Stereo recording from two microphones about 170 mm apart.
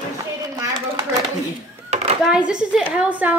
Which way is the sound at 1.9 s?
40° right (ahead or behind).